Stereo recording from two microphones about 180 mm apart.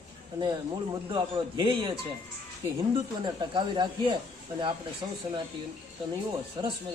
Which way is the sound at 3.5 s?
25° right (ahead or behind).